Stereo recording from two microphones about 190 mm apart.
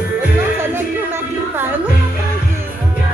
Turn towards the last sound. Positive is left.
turn(degrees=-10)  # may be behind; listen again after turning